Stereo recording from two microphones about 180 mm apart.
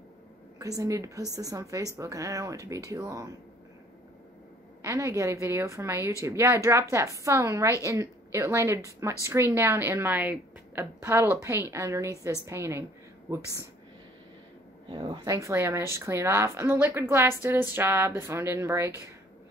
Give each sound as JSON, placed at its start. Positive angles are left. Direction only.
{"t": 0.6, "sound": "a woman's voice", "side_deg": -20}
{"t": 4.8, "sound": "speech", "side_deg": -15}
{"t": 14.9, "sound": "speech", "side_deg": -20}